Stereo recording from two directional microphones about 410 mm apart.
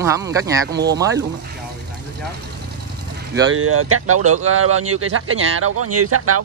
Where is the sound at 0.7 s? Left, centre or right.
Right.